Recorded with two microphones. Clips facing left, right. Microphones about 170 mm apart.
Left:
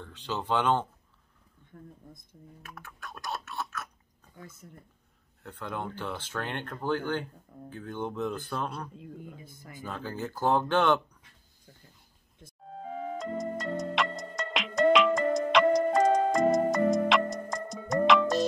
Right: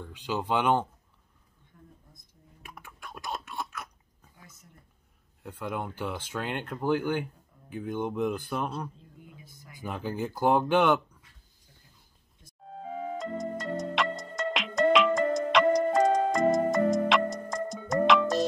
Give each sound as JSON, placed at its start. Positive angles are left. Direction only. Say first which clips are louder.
{"t": 0.0, "sound": "speech", "louder": "right 3 dB", "side_deg": -10}
{"t": 2.6, "sound": "typing", "louder": "right 1 dB", "side_deg": -15}
{"t": 5.4, "sound": "speech", "louder": "right 2 dB", "side_deg": -10}
{"t": 9.2, "sound": "speech", "louder": "left 6 dB", "side_deg": 50}
{"t": 9.7, "sound": "speech", "louder": "right 3 dB", "side_deg": -15}
{"t": 12.6, "sound": "music", "louder": "right 1 dB", "side_deg": 0}